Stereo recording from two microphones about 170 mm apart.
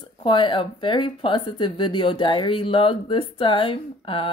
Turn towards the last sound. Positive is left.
turn(degrees=30)  # may be behind; listen again after turning